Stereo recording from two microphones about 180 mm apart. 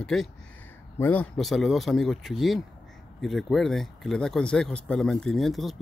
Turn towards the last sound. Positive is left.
turn(degrees=0)  # may be behind; listen again after turning